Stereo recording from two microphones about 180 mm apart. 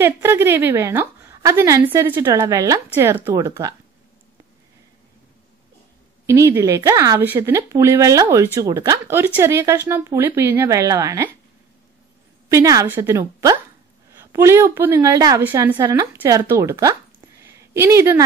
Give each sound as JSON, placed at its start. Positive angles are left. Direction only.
{"t": 0.0, "sound": "a woman's voice", "side_deg": -15}
{"t": 6.2, "sound": "a woman's voice", "side_deg": -15}
{"t": 12.4, "sound": "a woman's voice", "side_deg": -20}
{"t": 17.4, "sound": "a sound", "side_deg": -15}